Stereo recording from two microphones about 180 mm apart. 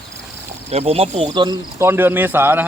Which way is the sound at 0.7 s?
35° right (ahead or behind).